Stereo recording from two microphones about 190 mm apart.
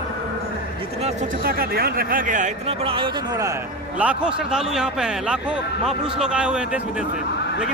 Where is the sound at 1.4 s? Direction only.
55° right (ahead or behind).